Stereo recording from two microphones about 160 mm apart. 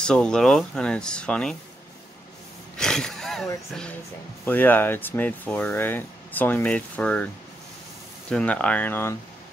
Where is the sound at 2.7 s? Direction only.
5° left (ahead or behind).